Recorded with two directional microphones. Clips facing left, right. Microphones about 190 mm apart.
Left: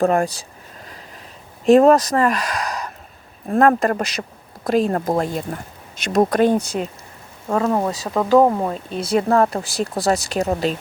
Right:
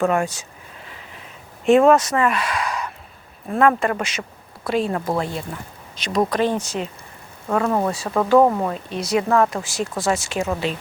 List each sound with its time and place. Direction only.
0.0 s speech: 35° left (ahead or behind)
1.6 s speech: 40° left (ahead or behind)
7.4 s speech: 10° left (ahead or behind)
9.0 s speech: 30° left (ahead or behind)